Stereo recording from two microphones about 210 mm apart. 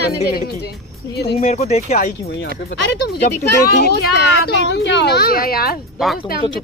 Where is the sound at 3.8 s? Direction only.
55° left (ahead or behind).